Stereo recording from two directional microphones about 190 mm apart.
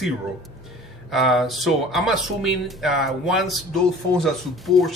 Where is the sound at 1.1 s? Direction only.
Centre (ahead or behind).